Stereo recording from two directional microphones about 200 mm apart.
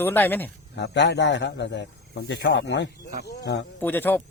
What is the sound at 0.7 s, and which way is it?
A man's voice, 60° left (ahead or behind).